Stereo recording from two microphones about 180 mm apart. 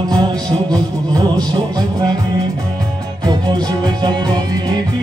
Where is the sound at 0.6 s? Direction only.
20° right (ahead or behind).